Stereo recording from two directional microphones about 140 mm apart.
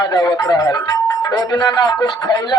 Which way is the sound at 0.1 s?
25° left (ahead or behind).